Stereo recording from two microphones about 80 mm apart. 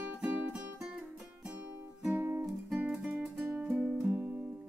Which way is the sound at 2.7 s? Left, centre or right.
Centre.